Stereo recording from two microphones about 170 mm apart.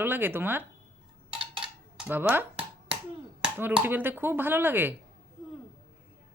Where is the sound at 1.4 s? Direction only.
30° right (ahead or behind).